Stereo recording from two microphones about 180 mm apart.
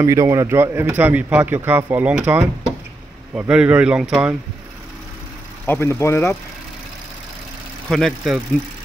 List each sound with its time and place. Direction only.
0.0 s speech: 15° right (ahead or behind)
5.7 s speech: 15° left (ahead or behind)
7.9 s speech: 5° left (ahead or behind)